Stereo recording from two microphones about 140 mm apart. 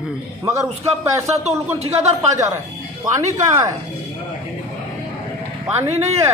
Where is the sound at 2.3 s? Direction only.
20° right (ahead or behind).